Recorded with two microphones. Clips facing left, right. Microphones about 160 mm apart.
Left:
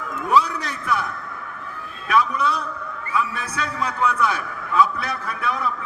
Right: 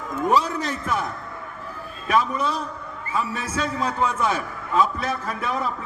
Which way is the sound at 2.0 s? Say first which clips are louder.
Left 1 dB; 45° right (ahead or behind).